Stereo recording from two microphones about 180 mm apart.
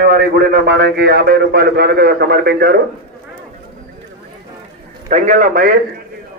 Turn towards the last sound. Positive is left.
turn(degrees=-50)  # may be behind; listen again after turning